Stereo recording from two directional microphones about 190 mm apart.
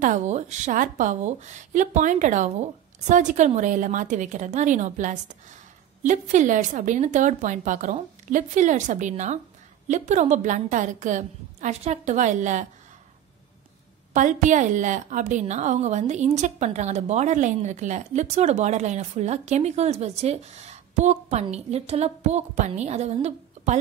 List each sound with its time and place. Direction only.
0.0 s a woman's voice: 40° right (ahead or behind)
14.1 s a woman's voice: 40° right (ahead or behind)